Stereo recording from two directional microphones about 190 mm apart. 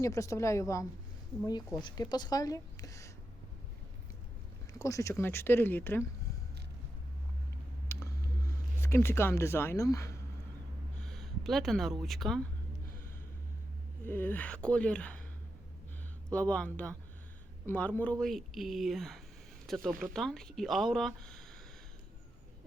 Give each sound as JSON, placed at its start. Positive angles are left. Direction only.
{"t": 0.0, "sound": "speech", "side_deg": 15}
{"t": 4.8, "sound": "speech", "side_deg": 15}
{"t": 7.9, "sound": "a sound", "side_deg": 15}
{"t": 11.0, "sound": "a sound", "side_deg": 0}
{"t": 12.0, "sound": "speech", "side_deg": 0}
{"t": 14.0, "sound": "speech", "side_deg": 10}
{"t": 16.3, "sound": "speech", "side_deg": 5}